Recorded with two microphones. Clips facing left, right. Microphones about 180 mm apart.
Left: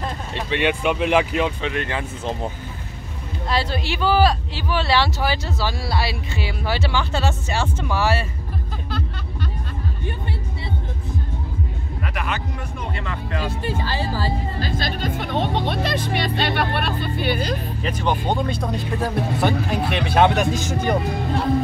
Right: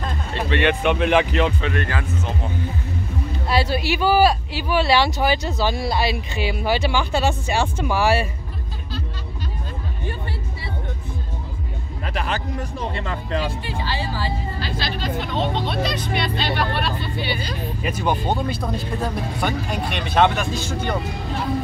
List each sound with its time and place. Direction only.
0.5 s speech: 10° left (ahead or behind)
3.4 s speech: 10° right (ahead or behind)
12.1 s speech: 30° right (ahead or behind)
13.4 s speech: 40° left (ahead or behind)
17.8 s speech: 10° right (ahead or behind)
20.3 s speech: 15° left (ahead or behind)